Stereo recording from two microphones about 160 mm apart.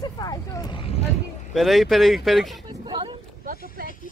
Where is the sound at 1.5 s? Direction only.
Centre (ahead or behind).